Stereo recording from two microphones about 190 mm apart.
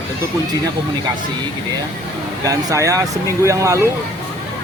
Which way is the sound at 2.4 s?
15° right (ahead or behind).